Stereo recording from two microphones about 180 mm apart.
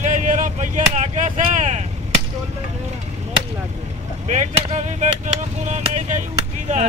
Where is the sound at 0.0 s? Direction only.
45° right (ahead or behind).